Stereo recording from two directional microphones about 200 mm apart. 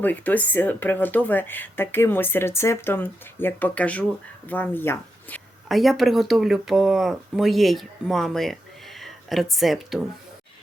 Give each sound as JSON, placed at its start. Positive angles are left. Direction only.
{"t": 0.0, "sound": "speech", "side_deg": 10}
{"t": 5.6, "sound": "speech", "side_deg": 0}